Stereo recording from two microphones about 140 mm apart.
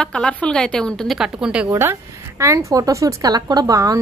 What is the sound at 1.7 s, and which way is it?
A woman's voice, 20° right (ahead or behind).